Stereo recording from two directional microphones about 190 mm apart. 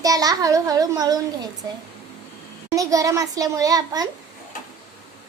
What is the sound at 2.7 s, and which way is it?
Speech, 15° right (ahead or behind).